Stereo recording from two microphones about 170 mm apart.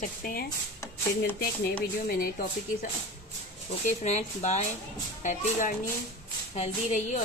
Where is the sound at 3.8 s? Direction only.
40° left (ahead or behind).